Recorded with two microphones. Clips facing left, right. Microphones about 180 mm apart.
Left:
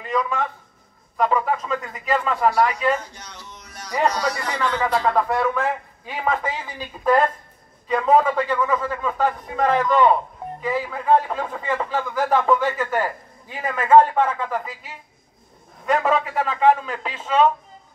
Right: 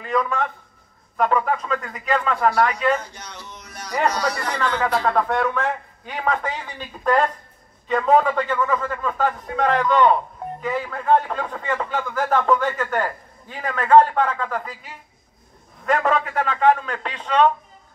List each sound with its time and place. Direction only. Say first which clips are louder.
0.0 s a man's voice: right 1 dB; centre (ahead or behind)
3.2 s a sound: right 2 dB; 65° right (ahead or behind)
3.9 s a man's voice: even; centre (ahead or behind)
15.8 s a man's voice: even; 5° left (ahead or behind)